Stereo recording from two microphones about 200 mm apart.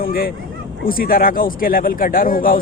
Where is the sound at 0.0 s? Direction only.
45° left (ahead or behind).